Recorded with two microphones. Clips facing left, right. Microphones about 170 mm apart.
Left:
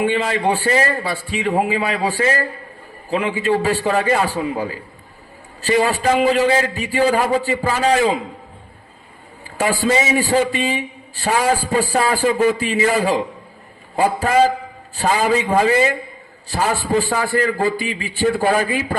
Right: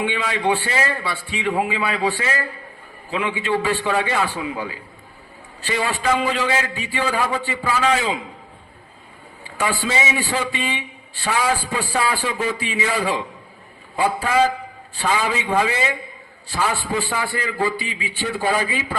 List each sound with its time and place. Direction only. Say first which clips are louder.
0.0 s a man's voice: left 4 dB; 45° left (ahead or behind)
9.6 s a man's voice: left 5 dB; 40° left (ahead or behind)